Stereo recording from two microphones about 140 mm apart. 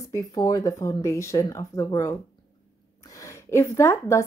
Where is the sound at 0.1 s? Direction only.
25° left (ahead or behind).